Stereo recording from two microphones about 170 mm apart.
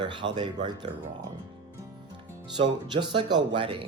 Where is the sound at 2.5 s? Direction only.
25° right (ahead or behind).